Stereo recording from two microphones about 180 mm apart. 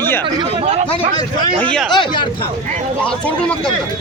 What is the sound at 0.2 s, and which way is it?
Speech, 25° right (ahead or behind).